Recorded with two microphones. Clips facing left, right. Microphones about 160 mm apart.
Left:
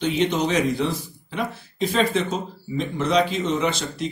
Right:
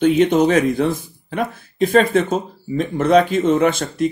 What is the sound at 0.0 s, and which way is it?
Speech, 50° right (ahead or behind).